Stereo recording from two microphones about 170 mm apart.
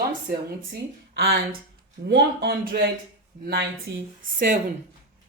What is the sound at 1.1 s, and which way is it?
A woman's voice, 70° right (ahead or behind).